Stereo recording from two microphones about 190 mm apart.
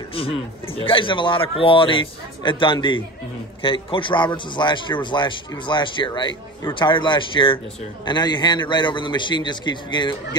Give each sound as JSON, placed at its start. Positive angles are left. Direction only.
{"t": 0.1, "sound": "a man's voice", "side_deg": 30}